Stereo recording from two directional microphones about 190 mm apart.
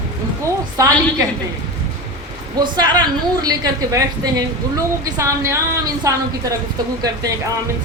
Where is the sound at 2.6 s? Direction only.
20° right (ahead or behind).